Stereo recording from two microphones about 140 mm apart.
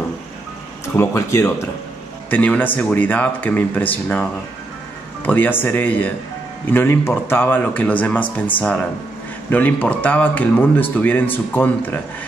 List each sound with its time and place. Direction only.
0.9 s speech: 20° left (ahead or behind)
9.5 s speech: 10° left (ahead or behind)